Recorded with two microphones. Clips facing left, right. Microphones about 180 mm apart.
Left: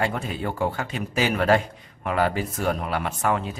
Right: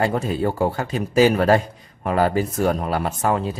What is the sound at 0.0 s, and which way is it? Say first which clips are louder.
Speech: right 6 dB; 40° right (ahead or behind).